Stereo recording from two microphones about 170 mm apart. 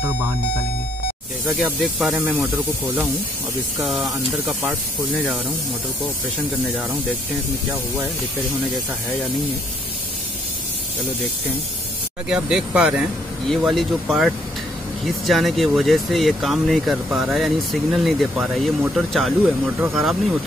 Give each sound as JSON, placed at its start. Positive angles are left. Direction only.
{"t": 1.6, "sound": "speech", "side_deg": 0}
{"t": 3.8, "sound": "speech", "side_deg": 0}
{"t": 12.3, "sound": "speech", "side_deg": -5}